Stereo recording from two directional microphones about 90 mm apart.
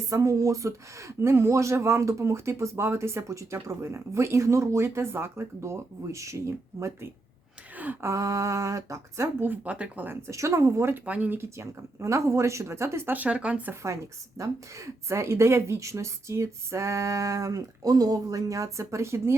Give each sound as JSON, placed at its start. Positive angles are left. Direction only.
{"t": 0.1, "sound": "speech", "side_deg": -35}
{"t": 9.4, "sound": "speech", "side_deg": -20}
{"t": 10.2, "sound": "speech", "side_deg": -35}
{"t": 11.0, "sound": "speech", "side_deg": -15}
{"t": 11.3, "sound": "speech", "side_deg": -30}
{"t": 13.8, "sound": "speech", "side_deg": -35}